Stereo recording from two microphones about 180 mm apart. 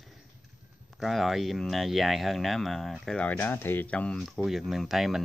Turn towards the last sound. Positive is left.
turn(degrees=0)  # may be behind; listen again after turning